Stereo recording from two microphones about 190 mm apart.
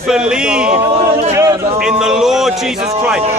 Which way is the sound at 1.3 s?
15° right (ahead or behind).